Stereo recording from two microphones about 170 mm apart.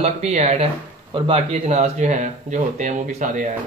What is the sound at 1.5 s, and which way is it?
Speech, 40° right (ahead or behind).